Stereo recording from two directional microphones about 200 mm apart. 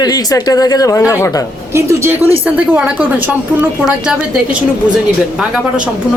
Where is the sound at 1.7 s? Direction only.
15° right (ahead or behind).